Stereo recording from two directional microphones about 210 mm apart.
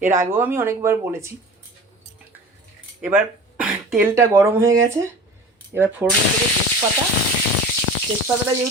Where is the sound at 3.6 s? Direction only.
10° right (ahead or behind).